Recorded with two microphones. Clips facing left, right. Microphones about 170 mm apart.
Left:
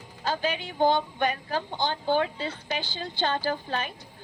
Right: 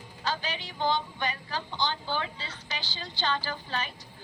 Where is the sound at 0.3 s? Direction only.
50° left (ahead or behind).